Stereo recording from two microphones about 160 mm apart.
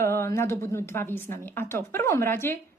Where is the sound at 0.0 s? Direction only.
15° left (ahead or behind).